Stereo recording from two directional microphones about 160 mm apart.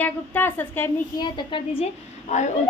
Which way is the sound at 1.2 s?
30° left (ahead or behind).